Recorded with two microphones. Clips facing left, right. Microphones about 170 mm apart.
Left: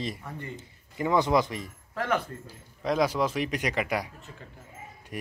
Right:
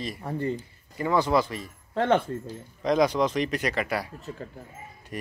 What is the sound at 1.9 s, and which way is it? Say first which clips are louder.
Speech: right 6 dB; 25° right (ahead or behind).